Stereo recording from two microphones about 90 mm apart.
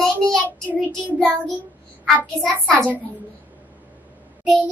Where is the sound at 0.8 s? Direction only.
20° left (ahead or behind).